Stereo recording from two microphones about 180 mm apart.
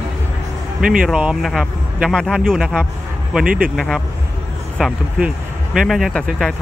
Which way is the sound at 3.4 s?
55° right (ahead or behind).